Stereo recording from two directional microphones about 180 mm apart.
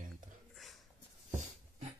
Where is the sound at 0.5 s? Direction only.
Centre (ahead or behind).